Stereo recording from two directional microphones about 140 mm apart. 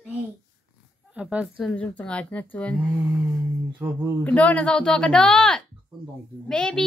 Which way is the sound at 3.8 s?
20° right (ahead or behind).